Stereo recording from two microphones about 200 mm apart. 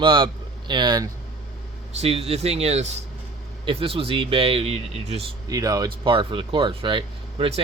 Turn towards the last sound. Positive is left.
turn(degrees=-25)  # may be behind; listen again after turning